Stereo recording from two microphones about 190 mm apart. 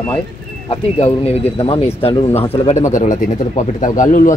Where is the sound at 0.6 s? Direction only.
30° left (ahead or behind).